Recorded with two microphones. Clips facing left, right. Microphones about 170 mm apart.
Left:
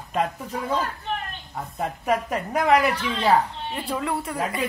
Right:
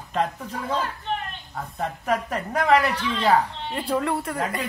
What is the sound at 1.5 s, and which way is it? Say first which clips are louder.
Speech: left 1 dB; 10° left (ahead or behind).